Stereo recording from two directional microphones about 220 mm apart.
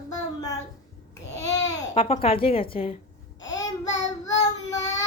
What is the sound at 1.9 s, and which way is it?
A woman's voice, 25° left (ahead or behind).